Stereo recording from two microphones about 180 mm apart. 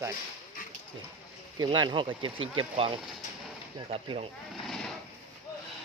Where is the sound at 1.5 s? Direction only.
25° right (ahead or behind).